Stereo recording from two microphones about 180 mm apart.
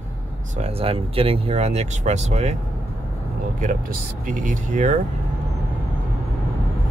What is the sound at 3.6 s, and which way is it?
Speech, 45° right (ahead or behind).